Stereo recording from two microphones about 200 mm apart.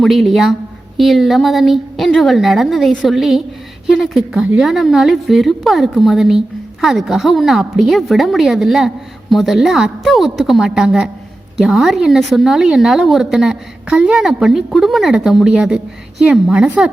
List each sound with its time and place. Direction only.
0.0 s a woman's voice: centre (ahead or behind)